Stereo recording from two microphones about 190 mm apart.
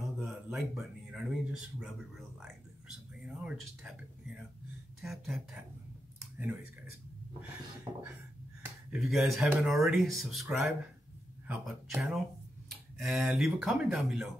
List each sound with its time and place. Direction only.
0.0 s speech: centre (ahead or behind)
7.9 s a sound: 30° right (ahead or behind)
8.9 s speech: centre (ahead or behind)
11.4 s speech: 5° right (ahead or behind)